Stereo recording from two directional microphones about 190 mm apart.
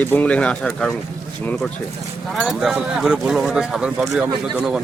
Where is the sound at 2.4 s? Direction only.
Centre (ahead or behind).